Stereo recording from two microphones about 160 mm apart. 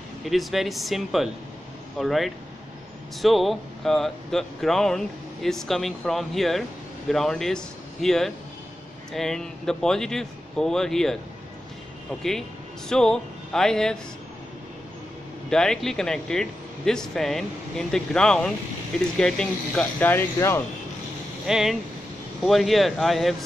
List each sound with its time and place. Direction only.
0.2 s speech: centre (ahead or behind)
12.2 s speech: 5° left (ahead or behind)
15.5 s speech: 5° left (ahead or behind)
21.5 s speech: 5° right (ahead or behind)